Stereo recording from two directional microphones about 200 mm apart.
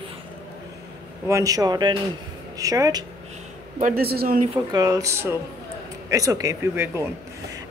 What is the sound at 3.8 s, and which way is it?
Speech, 50° right (ahead or behind).